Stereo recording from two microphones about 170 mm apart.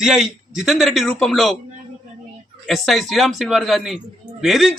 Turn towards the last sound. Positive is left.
turn(degrees=0)  # may be behind; listen again after turning